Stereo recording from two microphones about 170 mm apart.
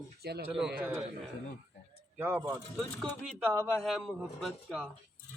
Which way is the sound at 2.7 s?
Centre (ahead or behind).